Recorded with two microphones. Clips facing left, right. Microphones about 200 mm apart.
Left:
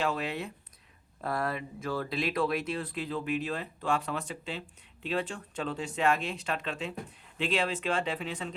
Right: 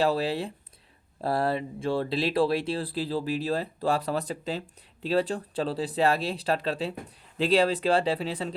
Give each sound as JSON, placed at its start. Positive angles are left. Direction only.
{"t": 0.0, "sound": "speech", "side_deg": -35}